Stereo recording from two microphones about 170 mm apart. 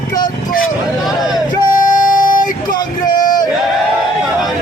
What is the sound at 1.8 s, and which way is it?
Music, 50° left (ahead or behind).